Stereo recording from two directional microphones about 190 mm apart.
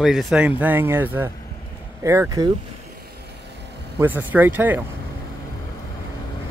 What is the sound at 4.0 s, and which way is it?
Speech, 10° right (ahead or behind).